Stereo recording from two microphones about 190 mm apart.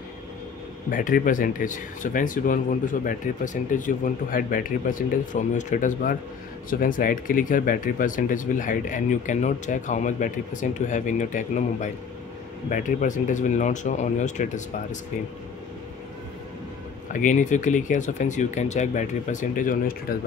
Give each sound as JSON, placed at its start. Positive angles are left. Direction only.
{"t": 0.8, "sound": "speech", "side_deg": 45}
{"t": 17.1, "sound": "speech", "side_deg": 40}